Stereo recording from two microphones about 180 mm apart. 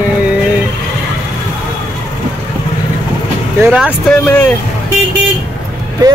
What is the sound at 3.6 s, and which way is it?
Speech, 5° right (ahead or behind).